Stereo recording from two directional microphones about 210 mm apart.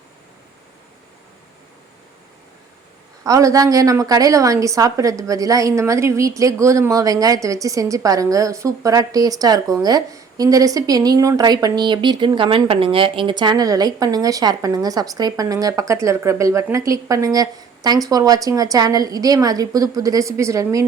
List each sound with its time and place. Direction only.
3.2 s a woman's voice: 15° right (ahead or behind)